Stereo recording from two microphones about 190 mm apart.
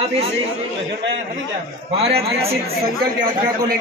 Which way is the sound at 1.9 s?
30° right (ahead or behind).